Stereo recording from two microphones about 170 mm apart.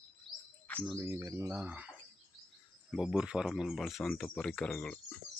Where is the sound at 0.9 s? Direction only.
15° right (ahead or behind).